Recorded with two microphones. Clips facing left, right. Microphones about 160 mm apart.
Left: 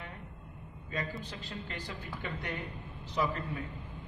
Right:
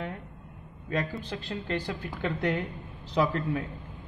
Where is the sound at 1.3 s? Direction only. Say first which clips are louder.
Right 10 dB; 60° right (ahead or behind).